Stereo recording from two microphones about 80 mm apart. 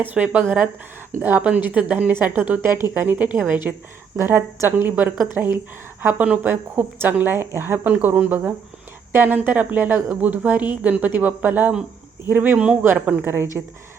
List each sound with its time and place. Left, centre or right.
0.0 s speech: centre